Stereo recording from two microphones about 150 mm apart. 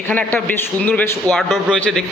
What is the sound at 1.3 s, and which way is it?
Speech, centre (ahead or behind).